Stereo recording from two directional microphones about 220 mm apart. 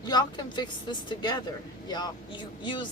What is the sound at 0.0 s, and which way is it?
A woman's voice, 20° left (ahead or behind).